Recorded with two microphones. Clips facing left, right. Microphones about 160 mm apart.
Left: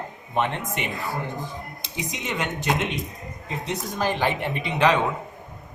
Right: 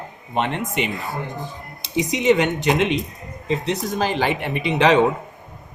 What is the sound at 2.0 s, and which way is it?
Speech, 80° right.